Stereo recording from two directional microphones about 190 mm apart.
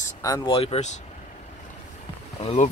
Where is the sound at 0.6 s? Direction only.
30° left (ahead or behind).